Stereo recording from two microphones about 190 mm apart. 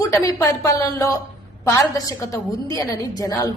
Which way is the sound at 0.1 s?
15° left (ahead or behind).